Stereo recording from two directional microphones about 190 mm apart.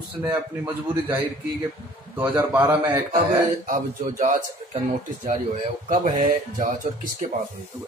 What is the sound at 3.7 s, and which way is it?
A man's voice, 40° right (ahead or behind).